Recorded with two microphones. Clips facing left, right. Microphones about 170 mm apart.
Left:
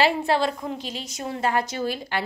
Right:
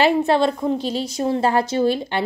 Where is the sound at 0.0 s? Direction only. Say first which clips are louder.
Right 5 dB; 20° right (ahead or behind).